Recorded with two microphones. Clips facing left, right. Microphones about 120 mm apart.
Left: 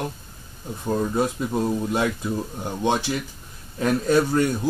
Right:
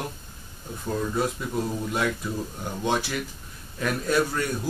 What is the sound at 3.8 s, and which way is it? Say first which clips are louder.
Speech: left 5 dB; 30° left (ahead or behind).